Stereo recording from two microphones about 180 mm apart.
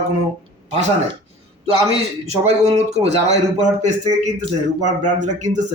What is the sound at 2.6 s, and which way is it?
A man's voice, 35° right (ahead or behind).